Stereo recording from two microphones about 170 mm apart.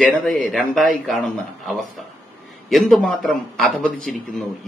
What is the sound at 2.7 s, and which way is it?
A man's voice, centre (ahead or behind).